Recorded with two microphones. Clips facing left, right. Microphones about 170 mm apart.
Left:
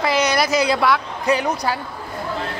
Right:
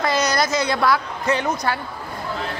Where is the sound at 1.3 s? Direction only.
15° left (ahead or behind).